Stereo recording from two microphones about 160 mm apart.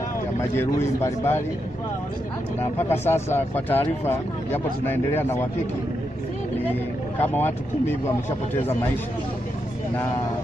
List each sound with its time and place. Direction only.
0.4 s speech: 15° left (ahead or behind)
2.8 s speech: 15° left (ahead or behind)
7.2 s speech: 10° left (ahead or behind)